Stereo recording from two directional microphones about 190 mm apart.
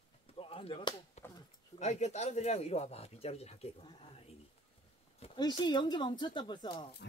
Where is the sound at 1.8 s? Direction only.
35° left (ahead or behind).